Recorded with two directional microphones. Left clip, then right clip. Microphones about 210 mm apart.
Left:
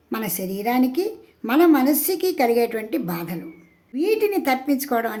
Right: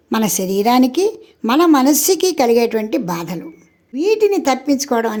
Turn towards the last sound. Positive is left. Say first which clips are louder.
# right 5 dB
turn(degrees=-25)  # may be behind; listen again after turning